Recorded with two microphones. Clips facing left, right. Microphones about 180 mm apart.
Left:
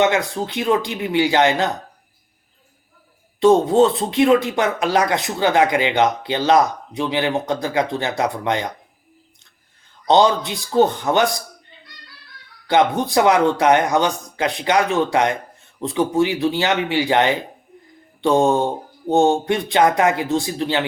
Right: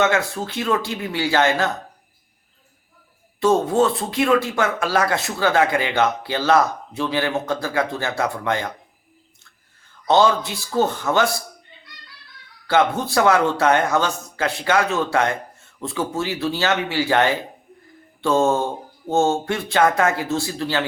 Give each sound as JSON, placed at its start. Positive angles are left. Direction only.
{"t": 0.0, "sound": "speech", "side_deg": 15}
{"t": 3.4, "sound": "speech", "side_deg": 20}
{"t": 9.9, "sound": "speech", "side_deg": 20}
{"t": 12.6, "sound": "speech", "side_deg": 20}